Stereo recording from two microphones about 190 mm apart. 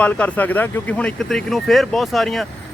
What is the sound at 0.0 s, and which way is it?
Speech, 10° left (ahead or behind).